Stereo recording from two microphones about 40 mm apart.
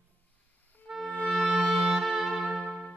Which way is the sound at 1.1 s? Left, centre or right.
Left.